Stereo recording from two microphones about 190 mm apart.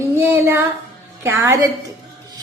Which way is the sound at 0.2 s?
10° right (ahead or behind).